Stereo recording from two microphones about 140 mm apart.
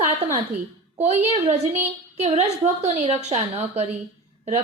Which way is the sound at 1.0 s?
50° right (ahead or behind).